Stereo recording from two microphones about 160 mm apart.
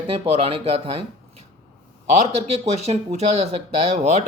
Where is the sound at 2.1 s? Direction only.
40° right (ahead or behind).